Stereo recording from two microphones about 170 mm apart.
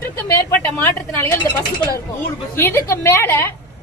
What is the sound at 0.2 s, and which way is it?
A woman's voice, 10° left (ahead or behind).